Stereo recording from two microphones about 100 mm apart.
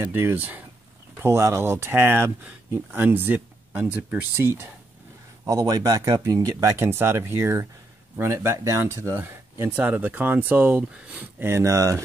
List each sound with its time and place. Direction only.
0.1 s speech: 20° right (ahead or behind)
1.2 s speech: 25° right (ahead or behind)
5.5 s speech: 35° right (ahead or behind)